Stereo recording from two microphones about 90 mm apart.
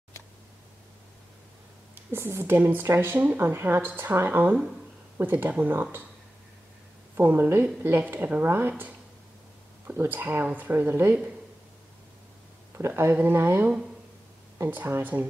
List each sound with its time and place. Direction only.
2.0 s speech: 25° right (ahead or behind)
7.2 s speech: 25° right (ahead or behind)
12.7 s speech: 25° right (ahead or behind)
14.7 s speech: 25° right (ahead or behind)